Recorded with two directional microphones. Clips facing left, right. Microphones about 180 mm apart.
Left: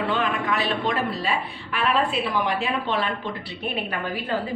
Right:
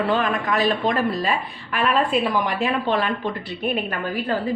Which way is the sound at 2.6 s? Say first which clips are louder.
Right 4 dB; 45° right (ahead or behind).